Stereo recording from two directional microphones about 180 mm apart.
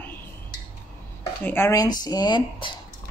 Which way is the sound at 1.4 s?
10° left (ahead or behind).